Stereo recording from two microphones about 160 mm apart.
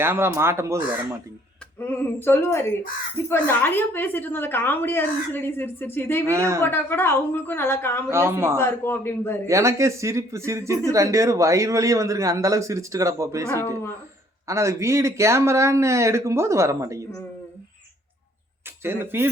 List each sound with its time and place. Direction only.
0.0 s speech: 15° right (ahead or behind)
1.8 s a sound: 15° left (ahead or behind)
3.2 s a woman's voice: 10° left (ahead or behind)
6.2 s speech: 20° right (ahead or behind)
6.6 s a woman's voice: 15° left (ahead or behind)
8.1 s speech: 15° right (ahead or behind)
8.5 s a woman's voice: 15° left (ahead or behind)
9.5 s speech: 20° right (ahead or behind)
18.8 s speech: 15° right (ahead or behind)